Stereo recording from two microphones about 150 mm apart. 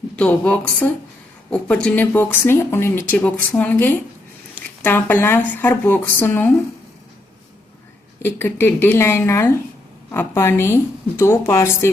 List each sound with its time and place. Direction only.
0.2 s speech: 10° left (ahead or behind)
8.2 s speech: 15° left (ahead or behind)